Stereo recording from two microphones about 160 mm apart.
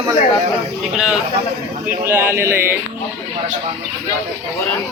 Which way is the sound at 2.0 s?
15° right (ahead or behind).